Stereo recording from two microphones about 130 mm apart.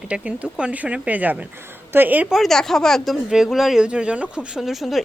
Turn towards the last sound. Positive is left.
turn(degrees=0)  # may be behind; listen again after turning